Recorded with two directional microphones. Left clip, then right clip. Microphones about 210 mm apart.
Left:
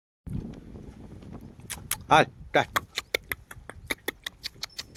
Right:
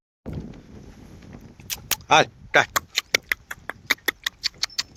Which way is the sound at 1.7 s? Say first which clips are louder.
Right 3 dB; 5° left (ahead or behind).